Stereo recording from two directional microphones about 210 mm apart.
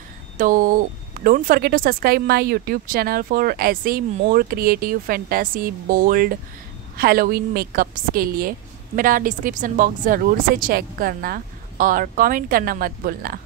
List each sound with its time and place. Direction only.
0.4 s a woman's voice: 40° right (ahead or behind)